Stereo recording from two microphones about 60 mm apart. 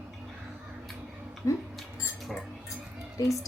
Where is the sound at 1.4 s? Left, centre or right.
Left.